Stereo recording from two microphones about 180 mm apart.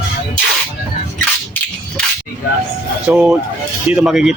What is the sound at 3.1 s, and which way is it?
Speech, 5° right (ahead or behind).